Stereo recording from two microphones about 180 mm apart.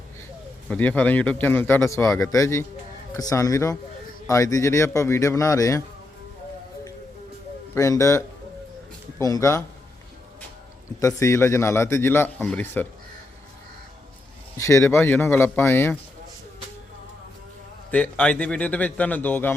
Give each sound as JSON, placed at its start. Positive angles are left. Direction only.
{"t": 0.7, "sound": "a man's voice", "side_deg": 10}
{"t": 7.8, "sound": "a man's voice", "side_deg": 15}
{"t": 11.0, "sound": "a man's voice", "side_deg": 15}
{"t": 14.6, "sound": "a man's voice", "side_deg": 15}
{"t": 17.9, "sound": "a man's voice", "side_deg": 5}